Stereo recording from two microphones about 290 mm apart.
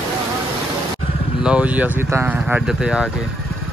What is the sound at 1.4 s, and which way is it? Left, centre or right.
Speech, centre.